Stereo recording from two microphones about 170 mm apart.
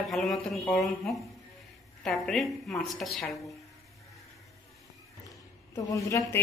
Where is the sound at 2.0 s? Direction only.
5° left (ahead or behind).